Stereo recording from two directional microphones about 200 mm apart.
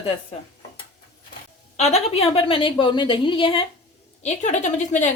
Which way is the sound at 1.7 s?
35° left (ahead or behind).